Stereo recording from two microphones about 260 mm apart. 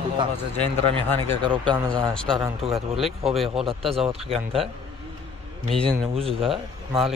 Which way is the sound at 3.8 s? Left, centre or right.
Centre.